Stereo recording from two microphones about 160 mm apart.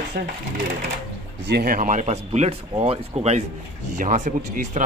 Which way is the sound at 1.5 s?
65° right (ahead or behind).